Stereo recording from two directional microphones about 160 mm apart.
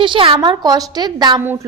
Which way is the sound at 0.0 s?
30° right (ahead or behind).